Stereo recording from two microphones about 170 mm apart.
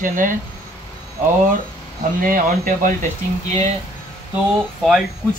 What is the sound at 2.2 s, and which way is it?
Speech, 55° right (ahead or behind).